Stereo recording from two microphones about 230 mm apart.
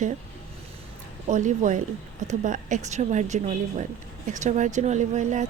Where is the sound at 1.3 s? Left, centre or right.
Right.